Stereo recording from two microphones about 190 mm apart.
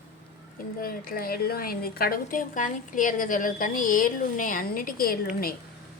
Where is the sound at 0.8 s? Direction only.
50° left (ahead or behind).